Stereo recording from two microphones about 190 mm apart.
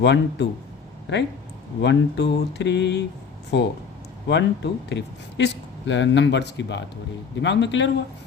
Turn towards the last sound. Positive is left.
turn(degrees=70)  # may be behind; listen again after turning